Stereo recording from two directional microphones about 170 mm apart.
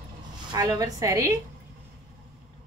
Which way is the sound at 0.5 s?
20° right (ahead or behind).